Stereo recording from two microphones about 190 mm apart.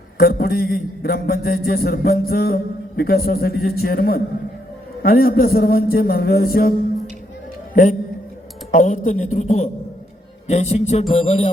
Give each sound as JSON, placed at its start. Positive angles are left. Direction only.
{"t": 0.2, "sound": "a man's voice", "side_deg": 55}
{"t": 8.7, "sound": "a woman's voice", "side_deg": 40}